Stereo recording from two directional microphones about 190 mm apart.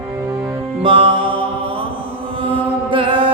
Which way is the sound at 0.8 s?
30° right (ahead or behind).